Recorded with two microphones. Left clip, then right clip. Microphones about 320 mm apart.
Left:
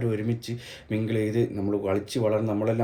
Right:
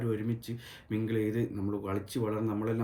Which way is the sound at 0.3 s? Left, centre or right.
Centre.